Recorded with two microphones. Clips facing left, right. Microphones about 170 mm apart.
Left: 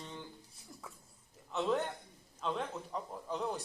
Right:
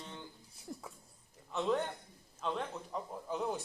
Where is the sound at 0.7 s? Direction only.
50° right (ahead or behind).